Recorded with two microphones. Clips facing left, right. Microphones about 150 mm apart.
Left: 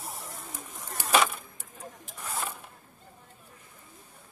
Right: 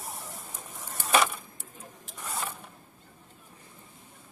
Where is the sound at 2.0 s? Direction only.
Centre (ahead or behind).